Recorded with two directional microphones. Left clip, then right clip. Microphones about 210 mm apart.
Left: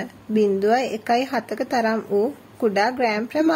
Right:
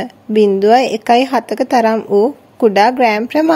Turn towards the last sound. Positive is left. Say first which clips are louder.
# right 8 dB
turn(degrees=-40)  # may be behind; listen again after turning